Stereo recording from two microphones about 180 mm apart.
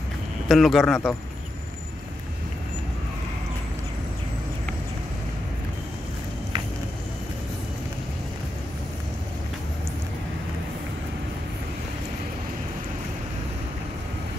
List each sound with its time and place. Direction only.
0.5 s speech: centre (ahead or behind)